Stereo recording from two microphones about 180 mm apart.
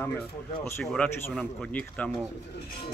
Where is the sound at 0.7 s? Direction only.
10° left (ahead or behind).